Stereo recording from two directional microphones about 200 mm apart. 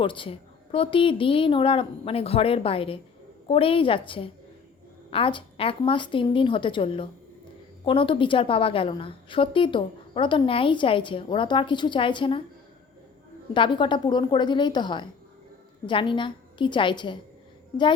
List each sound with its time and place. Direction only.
0.0 s a woman's voice: 25° left (ahead or behind)
13.5 s a woman's voice: 25° left (ahead or behind)